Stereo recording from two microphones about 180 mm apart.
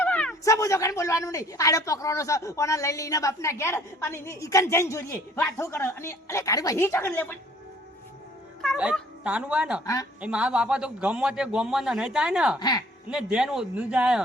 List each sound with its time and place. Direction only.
0.0 s a sound: 5° left (ahead or behind)
0.4 s a woman's voice: 15° left (ahead or behind)
8.6 s speech: 5° right (ahead or behind)
9.8 s speech: 20° left (ahead or behind)
10.2 s a man's voice: 5° right (ahead or behind)
12.5 s speech: 25° left (ahead or behind)
13.1 s a man's voice: 5° right (ahead or behind)